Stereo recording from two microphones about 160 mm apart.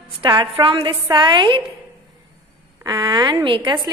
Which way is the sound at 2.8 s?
25° right (ahead or behind).